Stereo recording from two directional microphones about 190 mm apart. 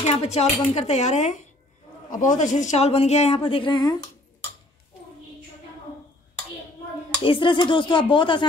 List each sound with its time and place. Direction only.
0.0 s speech: 35° left (ahead or behind)
7.2 s speech: 25° left (ahead or behind)